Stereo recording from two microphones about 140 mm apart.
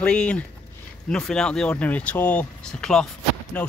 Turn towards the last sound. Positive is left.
turn(degrees=10)  # may be behind; listen again after turning